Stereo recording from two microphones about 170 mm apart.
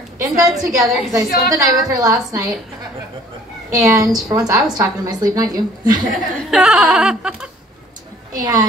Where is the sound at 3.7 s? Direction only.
20° right (ahead or behind).